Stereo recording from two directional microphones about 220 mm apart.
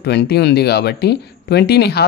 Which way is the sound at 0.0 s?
50° left (ahead or behind).